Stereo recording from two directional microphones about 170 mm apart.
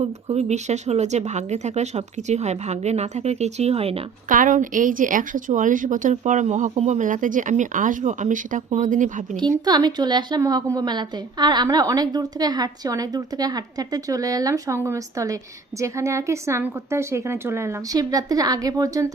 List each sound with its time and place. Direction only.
0.0 s speech: 40° right (ahead or behind)
4.3 s speech: 50° right (ahead or behind)
9.4 s a woman's voice: 25° right (ahead or behind)